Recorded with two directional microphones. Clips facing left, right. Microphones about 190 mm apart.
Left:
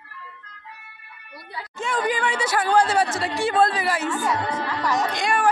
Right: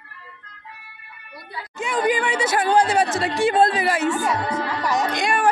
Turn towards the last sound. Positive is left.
turn(degrees=-20)  # may be behind; listen again after turning